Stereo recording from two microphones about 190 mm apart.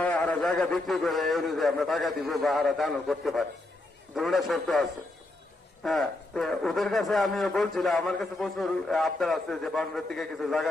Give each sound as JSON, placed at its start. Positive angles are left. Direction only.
{"t": 0.0, "sound": "a man's voice", "side_deg": 5}